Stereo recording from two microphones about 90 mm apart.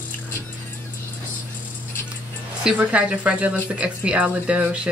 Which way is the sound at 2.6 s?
15° right (ahead or behind).